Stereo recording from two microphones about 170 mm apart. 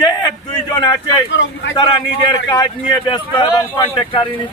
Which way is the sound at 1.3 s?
90° left.